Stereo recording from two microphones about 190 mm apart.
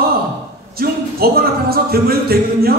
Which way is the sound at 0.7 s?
55° right (ahead or behind).